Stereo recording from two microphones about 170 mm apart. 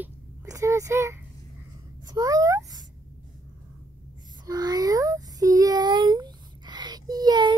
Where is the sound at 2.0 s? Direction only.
20° right (ahead or behind).